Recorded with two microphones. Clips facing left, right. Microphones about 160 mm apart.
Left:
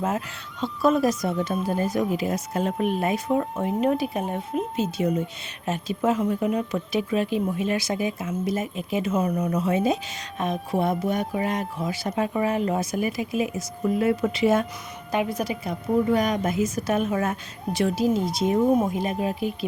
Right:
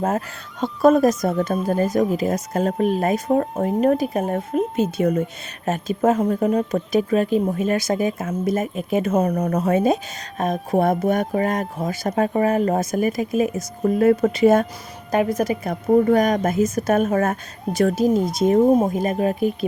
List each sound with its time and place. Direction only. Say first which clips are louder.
0.6 s speech: right 6 dB; 45° right (ahead or behind)